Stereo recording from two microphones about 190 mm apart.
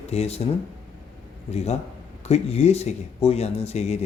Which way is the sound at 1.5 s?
35° left (ahead or behind).